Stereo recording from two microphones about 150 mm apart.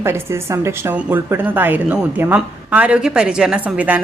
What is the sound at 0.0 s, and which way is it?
A woman's voice, 20° right (ahead or behind).